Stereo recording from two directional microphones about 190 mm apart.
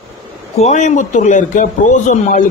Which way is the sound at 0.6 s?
40° left (ahead or behind).